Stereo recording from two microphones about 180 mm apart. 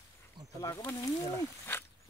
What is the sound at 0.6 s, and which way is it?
Speech, 15° left (ahead or behind).